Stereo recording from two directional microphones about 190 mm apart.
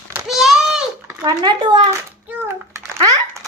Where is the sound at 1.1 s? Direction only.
20° right (ahead or behind).